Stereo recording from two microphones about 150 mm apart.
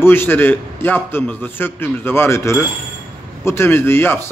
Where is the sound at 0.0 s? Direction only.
15° left (ahead or behind).